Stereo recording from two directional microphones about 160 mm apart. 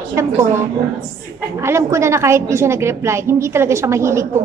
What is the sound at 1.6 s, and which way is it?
A woman's voice, 15° right (ahead or behind).